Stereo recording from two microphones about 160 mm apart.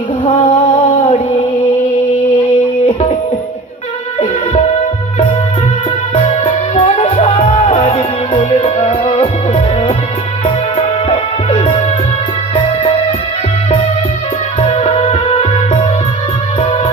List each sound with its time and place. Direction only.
0.4 s a sound: 35° left (ahead or behind)
6.1 s music: 45° left (ahead or behind)
14.6 s music: 45° left (ahead or behind)